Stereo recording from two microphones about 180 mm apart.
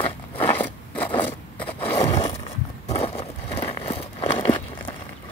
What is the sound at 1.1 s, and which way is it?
Scissors, 25° left (ahead or behind).